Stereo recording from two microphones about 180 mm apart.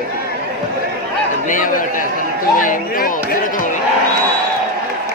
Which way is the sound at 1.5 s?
50° left (ahead or behind).